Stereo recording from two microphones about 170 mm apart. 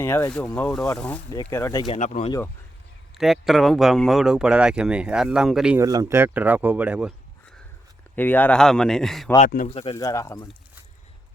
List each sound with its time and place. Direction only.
0.0 s speech: 15° left (ahead or behind)
1.9 s speech: 40° left (ahead or behind)
3.2 s speech: centre (ahead or behind)
5.7 s speech: 20° right (ahead or behind)
8.1 s speech: 10° left (ahead or behind)
9.6 s speech: 35° left (ahead or behind)
9.9 s speech: 20° left (ahead or behind)